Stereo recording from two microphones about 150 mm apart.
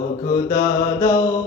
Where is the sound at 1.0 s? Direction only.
15° left (ahead or behind).